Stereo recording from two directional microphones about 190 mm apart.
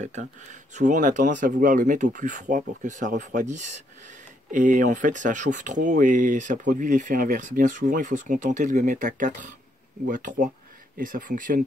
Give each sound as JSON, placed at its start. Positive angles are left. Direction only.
{"t": 0.0, "sound": "speech", "side_deg": -40}